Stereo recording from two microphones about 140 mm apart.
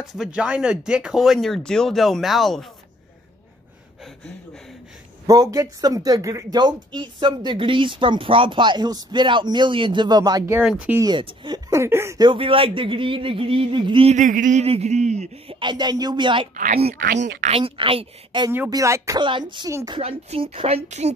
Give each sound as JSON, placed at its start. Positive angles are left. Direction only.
{"t": 0.0, "sound": "speech", "side_deg": 0}
{"t": 5.2, "sound": "a man's voice", "side_deg": -25}
{"t": 10.7, "sound": "speech", "side_deg": -10}
{"t": 11.0, "sound": "speech", "side_deg": -35}
{"t": 11.7, "sound": "a man's voice", "side_deg": -20}
{"t": 12.2, "sound": "speech", "side_deg": -35}
{"t": 14.1, "sound": "a sound", "side_deg": -65}
{"t": 14.7, "sound": "speech", "side_deg": -50}
{"t": 15.6, "sound": "speech", "side_deg": -30}
{"t": 17.0, "sound": "a sound", "side_deg": -60}
{"t": 17.6, "sound": "speech", "side_deg": -40}
{"t": 18.7, "sound": "a man's voice", "side_deg": -20}
{"t": 19.2, "sound": "speech", "side_deg": -35}
{"t": 19.9, "sound": "speech", "side_deg": -45}